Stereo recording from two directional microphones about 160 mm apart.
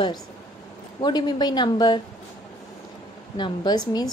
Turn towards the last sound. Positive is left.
turn(degrees=25)  # may be behind; listen again after turning